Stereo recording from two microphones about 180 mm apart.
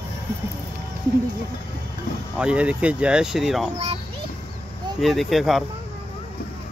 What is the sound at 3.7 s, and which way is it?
Speech, 35° right (ahead or behind).